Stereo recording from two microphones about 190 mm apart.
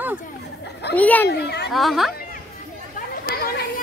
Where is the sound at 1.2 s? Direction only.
60° left (ahead or behind).